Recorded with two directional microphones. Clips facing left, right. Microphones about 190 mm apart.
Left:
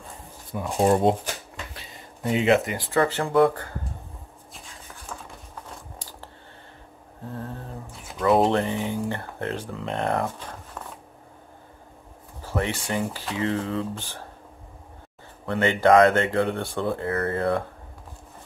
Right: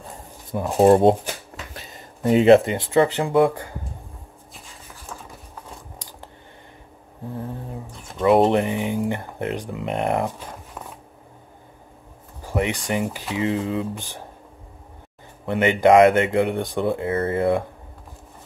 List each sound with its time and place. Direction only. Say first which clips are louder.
0.5 s speech: right 6 dB; 40° right (ahead or behind); by 3.3 s 15° right (ahead or behind)
4.6 s a sound: even; centre (ahead or behind)
5.9 s scissors: right 1 dB; 15° right (ahead or behind)
7.3 s speech: right 3 dB; 15° right (ahead or behind)
7.9 s a sound: right 1 dB; 5° left (ahead or behind)
8.5 s speech: right 3 dB; 15° right (ahead or behind)
12.4 s speech: right 3 dB; 15° right (ahead or behind)
15.4 s speech: right 3 dB; 20° right (ahead or behind)